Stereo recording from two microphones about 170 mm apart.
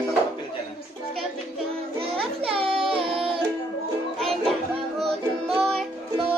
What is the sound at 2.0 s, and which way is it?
Child singing, 35° right (ahead or behind).